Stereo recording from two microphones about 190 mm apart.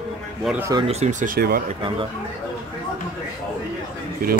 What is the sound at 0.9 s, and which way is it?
Speech, 35° right (ahead or behind).